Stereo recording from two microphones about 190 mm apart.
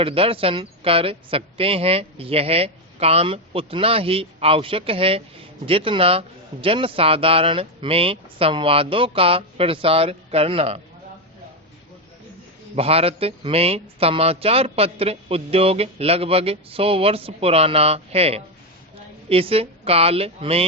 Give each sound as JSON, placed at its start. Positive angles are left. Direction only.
{"t": 0.0, "sound": "speech", "side_deg": -30}
{"t": 12.7, "sound": "speech", "side_deg": -30}